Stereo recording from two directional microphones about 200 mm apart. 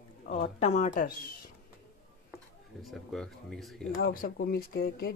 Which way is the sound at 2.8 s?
Centre (ahead or behind).